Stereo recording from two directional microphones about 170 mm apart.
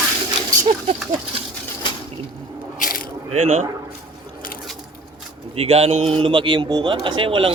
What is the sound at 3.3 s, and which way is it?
Speech, 40° right (ahead or behind).